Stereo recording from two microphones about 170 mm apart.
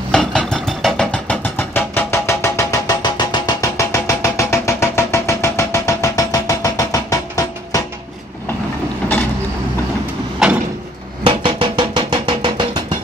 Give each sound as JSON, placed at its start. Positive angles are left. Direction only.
{"t": 0.1, "sound": "a sound", "side_deg": 5}
{"t": 10.4, "sound": "sliding door", "side_deg": -5}
{"t": 11.2, "sound": "music", "side_deg": -30}